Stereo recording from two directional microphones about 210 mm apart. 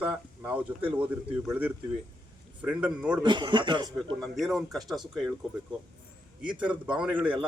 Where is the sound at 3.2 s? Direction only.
20° right (ahead or behind).